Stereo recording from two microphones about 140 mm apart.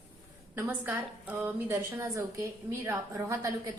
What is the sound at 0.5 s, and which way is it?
A woman's voice, 15° right (ahead or behind).